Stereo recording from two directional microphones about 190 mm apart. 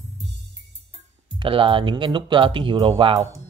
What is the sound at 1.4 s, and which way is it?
Speech, 30° right (ahead or behind).